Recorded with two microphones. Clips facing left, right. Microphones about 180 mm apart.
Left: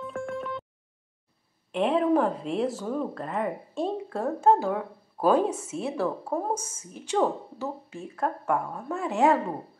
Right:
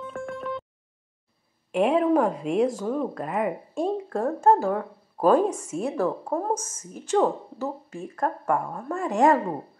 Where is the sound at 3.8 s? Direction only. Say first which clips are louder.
Right 3 dB; 5° left (ahead or behind).